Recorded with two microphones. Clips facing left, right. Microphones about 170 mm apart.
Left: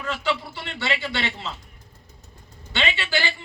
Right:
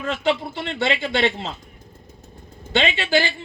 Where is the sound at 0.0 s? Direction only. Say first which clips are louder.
Right 5 dB; 50° right (ahead or behind).